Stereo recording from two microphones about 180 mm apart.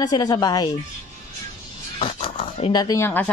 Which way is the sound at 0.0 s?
25° left (ahead or behind).